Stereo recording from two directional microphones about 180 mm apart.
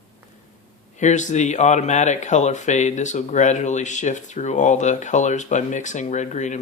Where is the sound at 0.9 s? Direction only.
40° left (ahead or behind).